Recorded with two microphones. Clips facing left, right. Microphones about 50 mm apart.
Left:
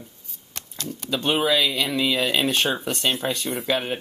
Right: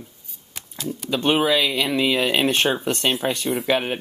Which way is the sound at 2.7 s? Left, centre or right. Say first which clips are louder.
Right 2 dB; centre.